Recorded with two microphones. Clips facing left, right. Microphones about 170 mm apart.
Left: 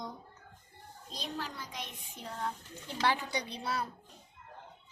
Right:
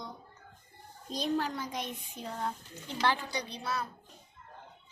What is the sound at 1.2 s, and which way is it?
Speech, 50° right (ahead or behind).